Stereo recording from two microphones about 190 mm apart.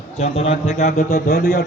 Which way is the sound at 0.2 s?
35° left (ahead or behind).